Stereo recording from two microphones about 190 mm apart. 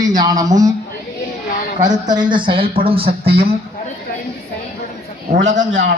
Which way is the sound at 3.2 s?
55° right (ahead or behind).